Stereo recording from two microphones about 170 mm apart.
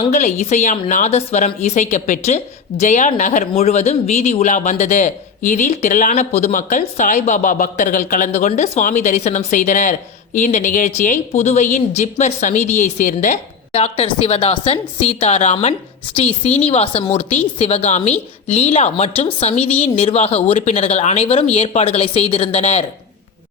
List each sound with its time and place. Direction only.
0.0 s a woman's voice: 45° left (ahead or behind)